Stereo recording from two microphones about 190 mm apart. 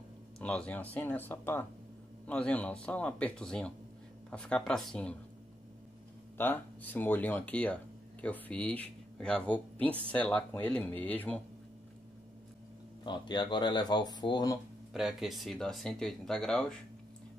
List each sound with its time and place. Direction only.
0.4 s speech: 5° left (ahead or behind)
6.3 s speech: 10° left (ahead or behind)
13.0 s speech: 25° left (ahead or behind)
14.9 s speech: centre (ahead or behind)